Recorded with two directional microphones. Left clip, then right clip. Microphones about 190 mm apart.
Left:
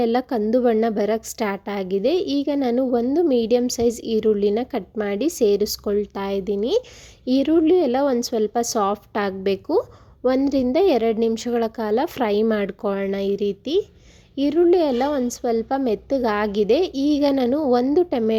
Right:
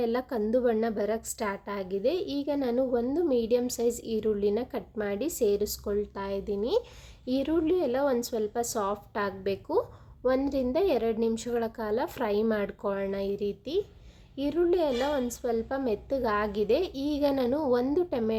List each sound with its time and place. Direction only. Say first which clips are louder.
0.0 s a woman's voice: left 8 dB; 35° left (ahead or behind)